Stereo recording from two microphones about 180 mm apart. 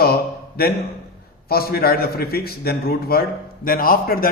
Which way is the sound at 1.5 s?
55° left (ahead or behind).